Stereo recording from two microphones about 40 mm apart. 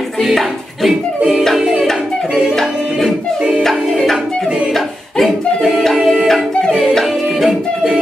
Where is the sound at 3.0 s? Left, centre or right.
Right.